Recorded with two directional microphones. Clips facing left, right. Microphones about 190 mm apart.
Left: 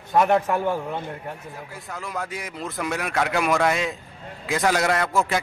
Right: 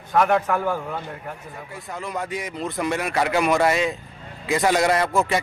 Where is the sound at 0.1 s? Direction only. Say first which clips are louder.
Even; 20° left (ahead or behind).